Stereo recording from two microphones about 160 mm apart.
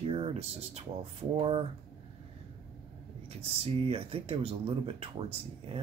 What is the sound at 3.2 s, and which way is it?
Speech, 35° right (ahead or behind).